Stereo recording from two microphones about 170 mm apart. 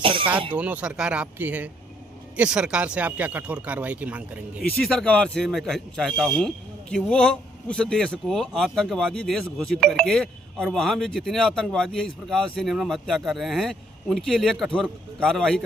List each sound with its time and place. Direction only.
0.0 s speech: 30° right (ahead or behind)
0.5 s speech: 10° right (ahead or behind)
4.6 s a man's voice: 5° left (ahead or behind)